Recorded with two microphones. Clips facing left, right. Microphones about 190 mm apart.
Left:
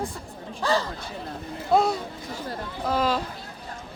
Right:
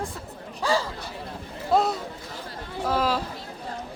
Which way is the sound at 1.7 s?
Centre (ahead or behind).